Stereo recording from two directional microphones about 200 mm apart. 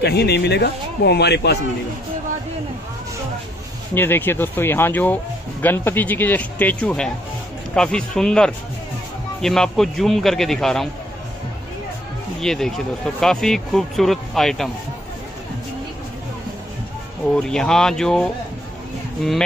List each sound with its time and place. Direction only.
0.0 s speech: 55° left (ahead or behind)
3.9 s speech: 10° left (ahead or behind)
12.4 s speech: centre (ahead or behind)
17.4 s speech: 5° left (ahead or behind)